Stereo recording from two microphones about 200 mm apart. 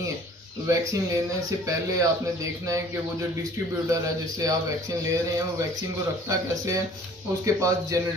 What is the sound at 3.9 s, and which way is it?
Speech, 15° right (ahead or behind).